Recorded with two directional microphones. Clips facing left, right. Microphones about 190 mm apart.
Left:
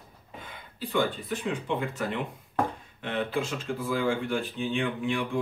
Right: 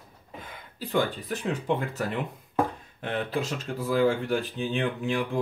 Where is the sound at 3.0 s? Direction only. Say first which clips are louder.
Even; 40° right (ahead or behind).